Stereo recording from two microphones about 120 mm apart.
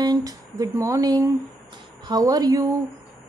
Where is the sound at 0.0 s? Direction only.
30° right (ahead or behind).